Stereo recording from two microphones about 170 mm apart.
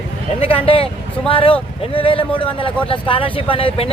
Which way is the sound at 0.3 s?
35° left (ahead or behind).